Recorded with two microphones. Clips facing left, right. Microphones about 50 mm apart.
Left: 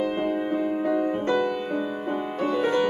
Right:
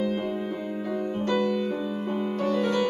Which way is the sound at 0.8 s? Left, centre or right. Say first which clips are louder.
Left 5 dB; left.